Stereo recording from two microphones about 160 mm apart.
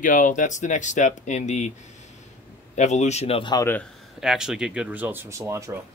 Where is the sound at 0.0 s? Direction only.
55° left (ahead or behind).